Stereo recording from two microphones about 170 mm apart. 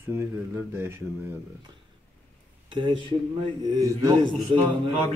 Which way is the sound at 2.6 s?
30° right (ahead or behind).